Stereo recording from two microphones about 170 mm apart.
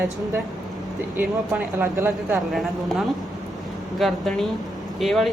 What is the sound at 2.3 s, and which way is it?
Speech, centre (ahead or behind).